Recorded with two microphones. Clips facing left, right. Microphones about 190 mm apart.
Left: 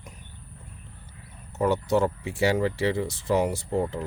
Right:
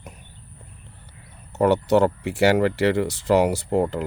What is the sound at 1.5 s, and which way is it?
Speech, 70° right (ahead or behind).